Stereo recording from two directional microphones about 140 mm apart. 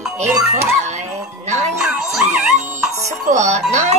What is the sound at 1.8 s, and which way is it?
Music, 5° right (ahead or behind).